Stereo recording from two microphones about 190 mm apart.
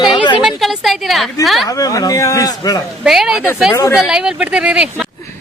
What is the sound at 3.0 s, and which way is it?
Speech, centre (ahead or behind).